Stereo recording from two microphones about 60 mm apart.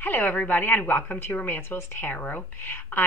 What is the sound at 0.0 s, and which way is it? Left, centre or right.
A woman's voice, left.